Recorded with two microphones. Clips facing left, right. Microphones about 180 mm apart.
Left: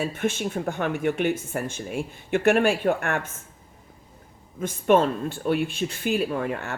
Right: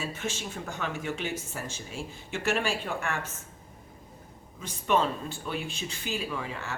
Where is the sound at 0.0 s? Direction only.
55° left (ahead or behind).